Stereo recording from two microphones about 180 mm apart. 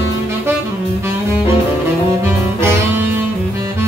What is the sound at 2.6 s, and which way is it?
Saxophone, 10° right (ahead or behind).